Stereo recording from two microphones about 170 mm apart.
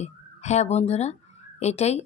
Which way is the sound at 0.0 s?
40° left (ahead or behind).